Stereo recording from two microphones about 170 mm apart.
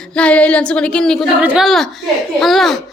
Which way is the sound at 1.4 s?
10° right (ahead or behind).